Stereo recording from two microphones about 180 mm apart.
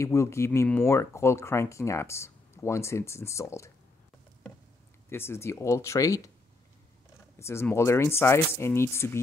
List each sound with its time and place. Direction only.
0.0 s speech: 15° left (ahead or behind)
5.1 s speech: 15° left (ahead or behind)
7.3 s speech: 15° left (ahead or behind)